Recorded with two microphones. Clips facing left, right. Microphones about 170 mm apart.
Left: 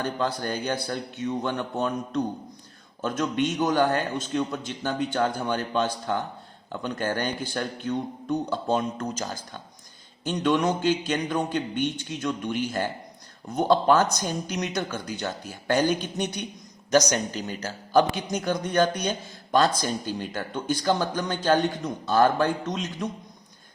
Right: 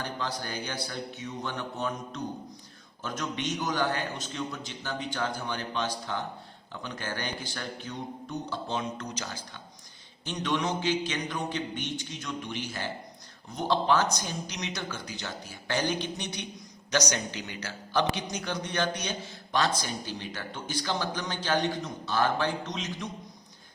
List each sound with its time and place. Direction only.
0.0 s a man's voice: 55° left (ahead or behind)